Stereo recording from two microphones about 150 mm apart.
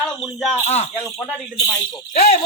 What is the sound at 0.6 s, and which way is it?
Speech, 45° left (ahead or behind).